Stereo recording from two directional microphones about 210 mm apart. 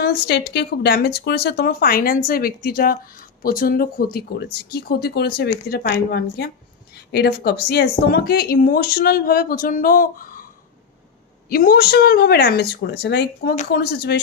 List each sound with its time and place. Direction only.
0.0 s speech: 50° left (ahead or behind)
11.4 s speech: 45° left (ahead or behind)